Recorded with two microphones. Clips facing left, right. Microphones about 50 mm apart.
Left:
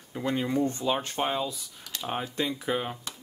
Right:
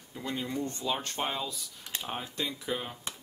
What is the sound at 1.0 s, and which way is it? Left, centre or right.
Speech, centre.